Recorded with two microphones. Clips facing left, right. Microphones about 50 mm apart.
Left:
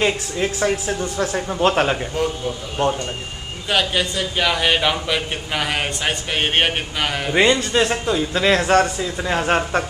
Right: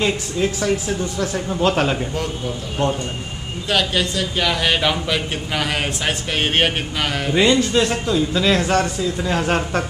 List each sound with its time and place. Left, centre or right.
0.0 s a man's voice: centre
3.6 s a man's voice: centre
7.3 s a man's voice: centre